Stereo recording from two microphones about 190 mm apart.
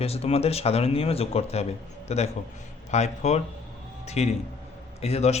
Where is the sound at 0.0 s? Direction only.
30° left (ahead or behind).